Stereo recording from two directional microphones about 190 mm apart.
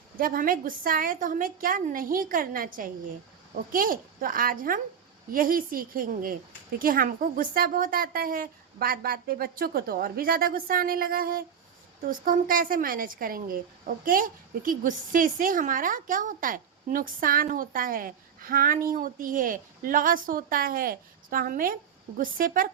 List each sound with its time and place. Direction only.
0.2 s a woman's voice: 50° right (ahead or behind)